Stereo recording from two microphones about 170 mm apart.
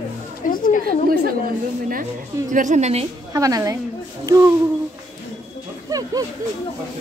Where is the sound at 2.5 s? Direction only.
45° right (ahead or behind).